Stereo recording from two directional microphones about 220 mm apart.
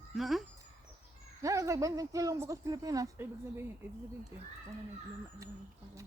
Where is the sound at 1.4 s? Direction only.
15° right (ahead or behind).